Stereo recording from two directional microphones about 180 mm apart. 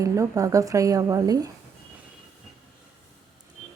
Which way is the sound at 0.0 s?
20° right (ahead or behind).